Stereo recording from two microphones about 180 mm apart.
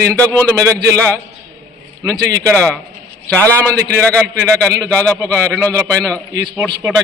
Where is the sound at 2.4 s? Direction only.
5° left (ahead or behind).